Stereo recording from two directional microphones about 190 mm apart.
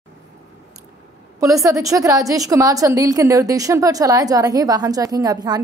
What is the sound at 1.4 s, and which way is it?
A woman's voice, 15° right (ahead or behind).